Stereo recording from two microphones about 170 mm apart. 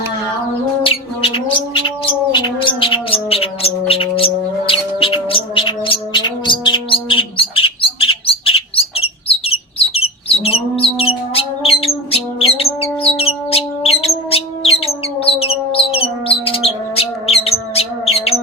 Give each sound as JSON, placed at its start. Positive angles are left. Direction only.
{"t": 0.9, "sound": "bird", "side_deg": 30}